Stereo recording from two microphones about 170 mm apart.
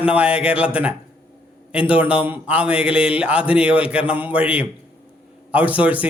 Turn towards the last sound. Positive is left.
turn(degrees=-10)  # may be behind; listen again after turning